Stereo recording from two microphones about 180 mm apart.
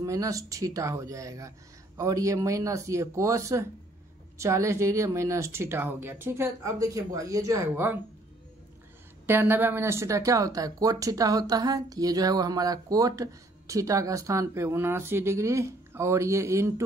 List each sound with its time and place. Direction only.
0.0 s speech: 20° right (ahead or behind)
9.2 s speech: 10° right (ahead or behind)